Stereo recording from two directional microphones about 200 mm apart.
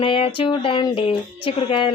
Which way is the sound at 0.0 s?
25° left (ahead or behind).